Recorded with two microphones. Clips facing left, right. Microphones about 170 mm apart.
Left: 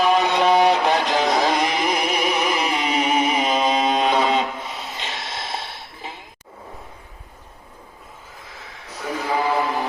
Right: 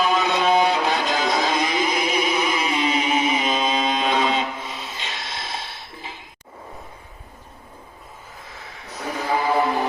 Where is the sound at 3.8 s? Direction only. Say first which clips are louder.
Left 3 dB; 40° left (ahead or behind).